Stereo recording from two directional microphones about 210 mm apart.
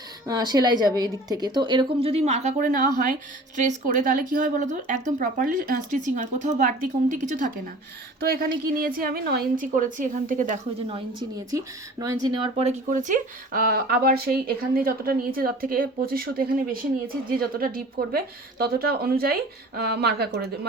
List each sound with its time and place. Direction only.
0.3 s a woman's voice: 20° right (ahead or behind); by 10.6 s 40° right (ahead or behind)
10.8 s a woman's voice: 25° right (ahead or behind)
12.5 s speech: 35° right (ahead or behind); by 20.5 s 50° right (ahead or behind)